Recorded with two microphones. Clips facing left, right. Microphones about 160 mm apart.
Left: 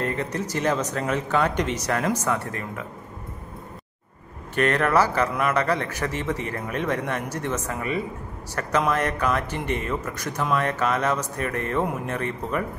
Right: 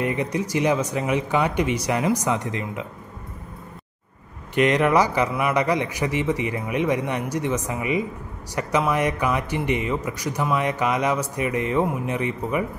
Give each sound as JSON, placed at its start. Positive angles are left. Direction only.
{"t": 0.0, "sound": "speech", "side_deg": -15}
{"t": 4.6, "sound": "speech", "side_deg": -15}